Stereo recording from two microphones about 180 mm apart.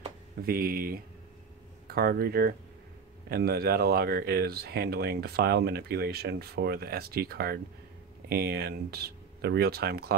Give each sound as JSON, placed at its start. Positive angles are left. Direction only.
{"t": 0.4, "sound": "speech", "side_deg": -55}